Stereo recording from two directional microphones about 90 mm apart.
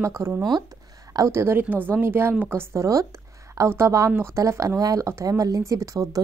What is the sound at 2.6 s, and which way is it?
Speech, 35° right (ahead or behind).